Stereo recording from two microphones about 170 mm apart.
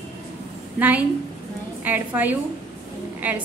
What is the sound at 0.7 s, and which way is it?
A woman's voice, 10° right (ahead or behind).